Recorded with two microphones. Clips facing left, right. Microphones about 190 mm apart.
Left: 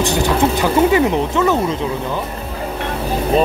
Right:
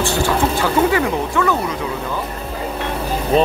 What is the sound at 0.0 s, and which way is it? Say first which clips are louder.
Speech: left 2 dB; 15° left (ahead or behind).